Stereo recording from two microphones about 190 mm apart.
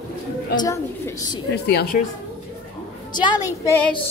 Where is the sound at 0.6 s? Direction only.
20° left (ahead or behind).